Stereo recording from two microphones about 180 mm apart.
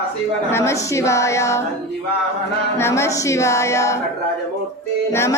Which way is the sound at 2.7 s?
15° left (ahead or behind).